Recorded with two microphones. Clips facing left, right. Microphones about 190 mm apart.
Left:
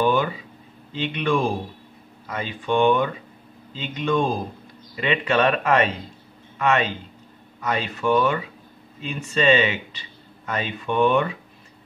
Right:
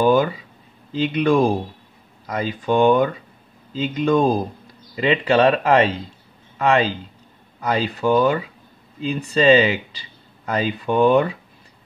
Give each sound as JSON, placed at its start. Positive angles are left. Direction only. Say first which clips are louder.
{"t": 0.0, "sound": "speech", "louder": "right 4 dB", "side_deg": -40}